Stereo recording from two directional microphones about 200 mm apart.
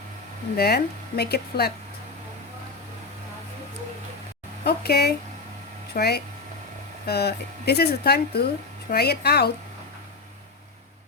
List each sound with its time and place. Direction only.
0.5 s speech: 50° left (ahead or behind)
4.6 s speech: 50° left (ahead or behind)